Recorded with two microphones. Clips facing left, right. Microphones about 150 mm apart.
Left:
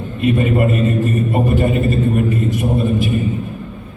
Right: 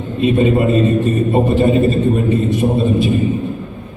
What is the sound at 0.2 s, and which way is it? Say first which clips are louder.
A man's voice: right 2 dB; 25° right (ahead or behind).